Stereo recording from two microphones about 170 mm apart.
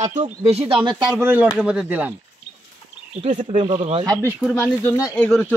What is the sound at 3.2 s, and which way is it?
Speech, 45° right (ahead or behind).